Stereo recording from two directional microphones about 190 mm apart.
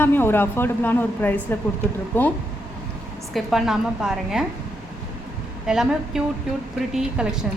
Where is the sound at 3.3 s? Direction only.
Centre (ahead or behind).